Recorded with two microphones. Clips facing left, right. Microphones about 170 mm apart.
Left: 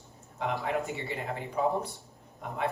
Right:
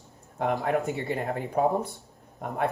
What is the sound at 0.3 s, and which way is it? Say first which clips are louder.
Speech: right 5 dB; 50° right (ahead or behind).